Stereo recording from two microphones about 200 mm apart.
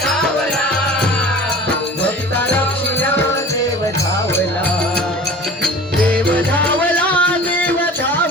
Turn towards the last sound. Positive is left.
turn(degrees=5)  # may be behind; listen again after turning